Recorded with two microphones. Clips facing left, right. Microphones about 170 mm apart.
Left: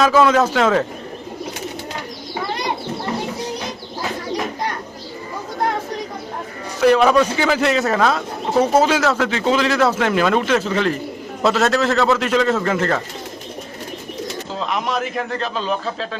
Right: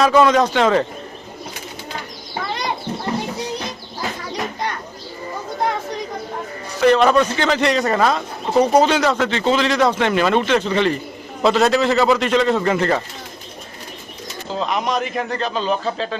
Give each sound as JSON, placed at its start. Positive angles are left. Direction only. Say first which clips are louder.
{"t": 0.0, "sound": "a man's voice", "louder": "even", "side_deg": 0}
{"t": 6.8, "sound": "a man's voice", "louder": "even", "side_deg": 5}
{"t": 14.5, "sound": "a man's voice", "louder": "right 2 dB", "side_deg": 0}